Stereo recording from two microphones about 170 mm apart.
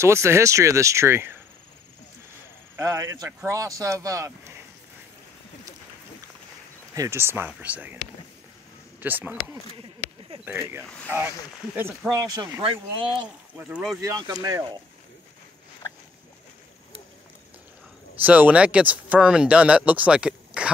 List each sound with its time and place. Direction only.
0.0 s speech: 15° right (ahead or behind)
2.7 s speech: 15° right (ahead or behind)
6.9 s speech: 15° right (ahead or behind)
9.0 s speech: 10° right (ahead or behind)
12.1 s speech: 20° right (ahead or behind)
13.6 s speech: 5° right (ahead or behind)
14.0 s speech: 20° right (ahead or behind)
18.2 s speech: 10° right (ahead or behind)